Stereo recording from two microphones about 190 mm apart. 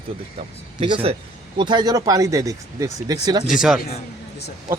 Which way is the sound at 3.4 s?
Centre (ahead or behind).